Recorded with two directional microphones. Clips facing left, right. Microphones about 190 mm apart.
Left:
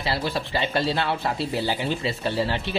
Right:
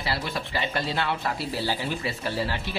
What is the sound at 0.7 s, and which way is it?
A woman's voice, 30° left (ahead or behind).